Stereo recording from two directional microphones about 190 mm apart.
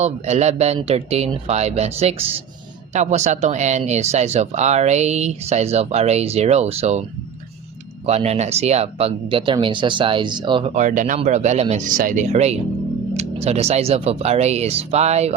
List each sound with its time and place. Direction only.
0.0 s speech: 35° right (ahead or behind)
8.0 s speech: 35° right (ahead or behind)
10.8 s speech: 40° right (ahead or behind)